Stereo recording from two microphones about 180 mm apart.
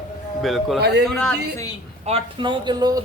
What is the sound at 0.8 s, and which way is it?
Speech, 65° right (ahead or behind).